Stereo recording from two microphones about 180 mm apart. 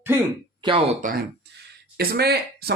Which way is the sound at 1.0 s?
50° right (ahead or behind).